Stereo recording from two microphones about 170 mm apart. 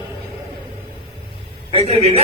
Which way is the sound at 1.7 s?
35° right (ahead or behind).